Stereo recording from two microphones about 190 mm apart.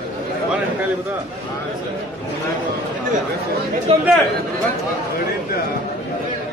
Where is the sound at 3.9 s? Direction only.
30° right (ahead or behind).